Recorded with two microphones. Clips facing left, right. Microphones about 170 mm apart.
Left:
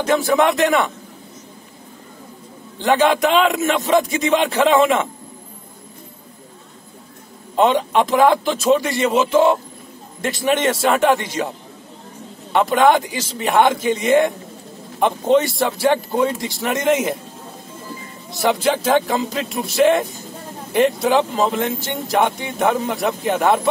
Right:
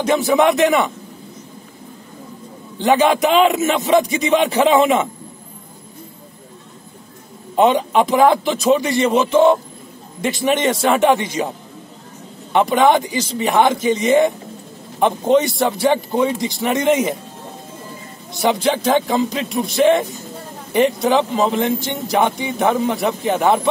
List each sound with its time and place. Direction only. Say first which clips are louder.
0.0 s a man's voice: right 1 dB; 5° right (ahead or behind)
2.8 s a man's voice: right 1 dB; centre (ahead or behind)
7.5 s a man's voice: right 2 dB; 5° right (ahead or behind)
12.5 s a man's voice: right 1 dB; centre (ahead or behind)
18.3 s a man's voice: right 1 dB; centre (ahead or behind)